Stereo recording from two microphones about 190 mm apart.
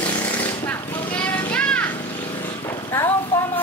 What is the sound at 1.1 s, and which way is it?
Children playing, 5° left (ahead or behind).